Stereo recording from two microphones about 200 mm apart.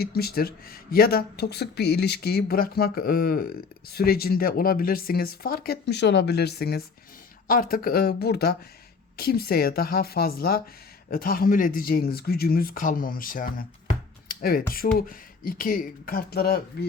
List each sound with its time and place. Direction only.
0.0 s speech: 50° left (ahead or behind)